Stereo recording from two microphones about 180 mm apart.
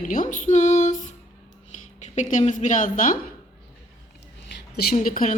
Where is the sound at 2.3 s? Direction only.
45° left (ahead or behind).